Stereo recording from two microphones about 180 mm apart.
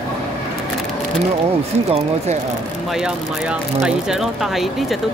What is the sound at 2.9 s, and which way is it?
Speech, 5° right (ahead or behind).